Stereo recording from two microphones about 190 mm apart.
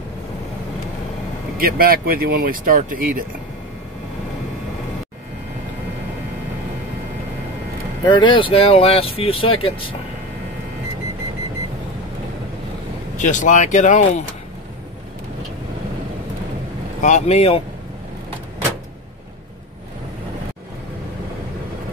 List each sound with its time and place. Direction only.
1.6 s speech: 50° right (ahead or behind)
8.0 s speech: 25° left (ahead or behind)
13.2 s speech: 40° left (ahead or behind)
17.0 s speech: 35° left (ahead or behind)